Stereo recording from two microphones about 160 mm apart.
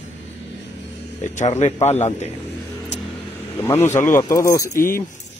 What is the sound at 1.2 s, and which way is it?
A man's voice, 50° left (ahead or behind).